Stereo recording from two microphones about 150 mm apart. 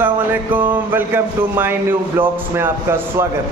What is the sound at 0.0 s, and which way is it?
Speech, 10° right (ahead or behind).